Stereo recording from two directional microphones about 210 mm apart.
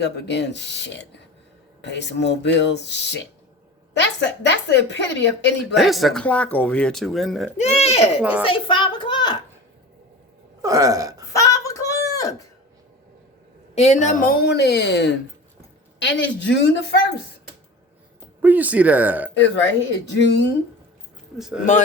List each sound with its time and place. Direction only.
0.0 s speech: 55° left (ahead or behind)
5.7 s speech: centre (ahead or behind)
7.5 s a child's voice: 30° left (ahead or behind)
8.2 s speech: 5° right (ahead or behind)
8.4 s a woman's voice: 25° left (ahead or behind)
10.6 s a sound: 15° right (ahead or behind)
11.3 s a sound: 15° left (ahead or behind)
13.7 s a woman's voice: 30° left (ahead or behind); by 17.0 s 55° left (ahead or behind)
18.4 s speech: 10° right (ahead or behind)
19.3 s speech: 60° left (ahead or behind)
21.3 s speech: centre (ahead or behind)